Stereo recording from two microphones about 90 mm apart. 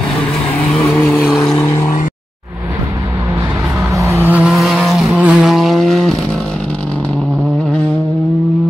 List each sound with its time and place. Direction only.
1.2 s vehicle: centre (ahead or behind)
1.6 s vehicle: 30° left (ahead or behind)
3.9 s vehicle: 35° right (ahead or behind)
4.2 s vehicle: 15° right (ahead or behind)
4.5 s vehicle: centre (ahead or behind)
5.1 s vehicle: 15° right (ahead or behind)
5.5 s vehicle: centre (ahead or behind)